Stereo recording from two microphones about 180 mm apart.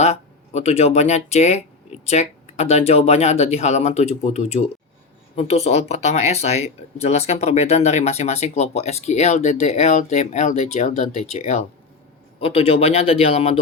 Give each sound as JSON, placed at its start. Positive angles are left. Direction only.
{"t": 0.0, "sound": "speech", "side_deg": 40}